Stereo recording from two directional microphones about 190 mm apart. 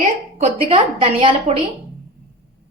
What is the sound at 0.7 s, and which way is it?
A woman's voice, 30° right (ahead or behind).